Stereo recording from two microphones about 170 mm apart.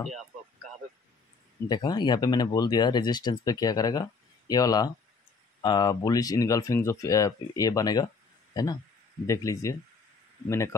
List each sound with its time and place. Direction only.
0.0 s speech: centre (ahead or behind)
1.7 s speech: 25° left (ahead or behind)
9.2 s speech: 20° left (ahead or behind)